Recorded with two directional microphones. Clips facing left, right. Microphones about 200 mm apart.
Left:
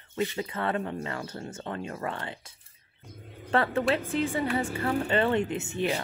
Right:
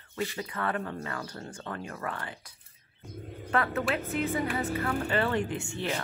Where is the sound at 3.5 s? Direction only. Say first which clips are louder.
Left 3 dB; 30° left (ahead or behind).